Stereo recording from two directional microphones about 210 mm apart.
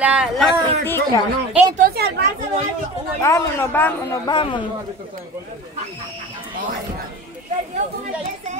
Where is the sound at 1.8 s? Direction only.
45° right (ahead or behind).